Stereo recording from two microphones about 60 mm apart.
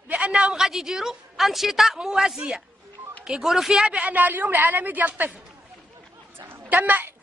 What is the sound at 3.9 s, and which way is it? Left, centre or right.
A woman's voice, right.